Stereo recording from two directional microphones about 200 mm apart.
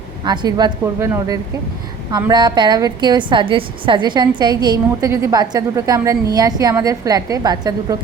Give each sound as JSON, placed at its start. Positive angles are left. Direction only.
{"t": 0.3, "sound": "a woman's voice", "side_deg": -20}